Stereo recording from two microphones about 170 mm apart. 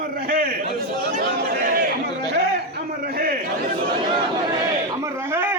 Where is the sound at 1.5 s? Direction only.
55° right (ahead or behind).